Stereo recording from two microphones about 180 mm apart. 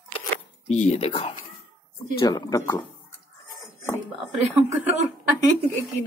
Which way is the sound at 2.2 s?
20° left (ahead or behind).